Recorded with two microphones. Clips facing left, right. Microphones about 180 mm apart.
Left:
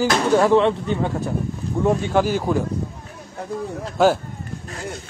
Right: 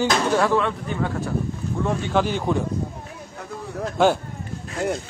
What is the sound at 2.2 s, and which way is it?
Speech, 5° left (ahead or behind).